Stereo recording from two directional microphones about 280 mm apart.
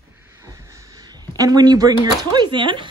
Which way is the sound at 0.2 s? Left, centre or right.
Centre.